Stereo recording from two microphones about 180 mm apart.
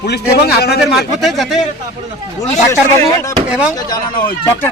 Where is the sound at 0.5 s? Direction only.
65° left (ahead or behind).